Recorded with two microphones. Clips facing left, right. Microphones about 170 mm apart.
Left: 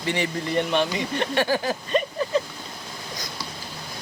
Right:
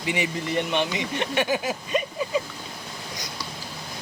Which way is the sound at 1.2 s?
15° right (ahead or behind).